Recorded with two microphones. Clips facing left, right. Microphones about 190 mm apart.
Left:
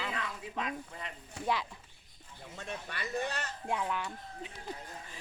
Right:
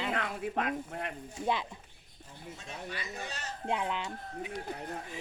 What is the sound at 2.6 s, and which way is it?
Speech, 60° left (ahead or behind).